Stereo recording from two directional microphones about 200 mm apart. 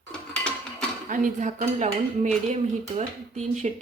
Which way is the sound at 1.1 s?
40° right (ahead or behind).